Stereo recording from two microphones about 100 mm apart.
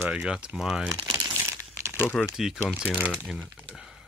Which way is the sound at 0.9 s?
35° right (ahead or behind).